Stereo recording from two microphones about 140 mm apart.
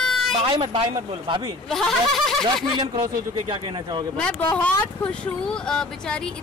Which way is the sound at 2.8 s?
30° right (ahead or behind).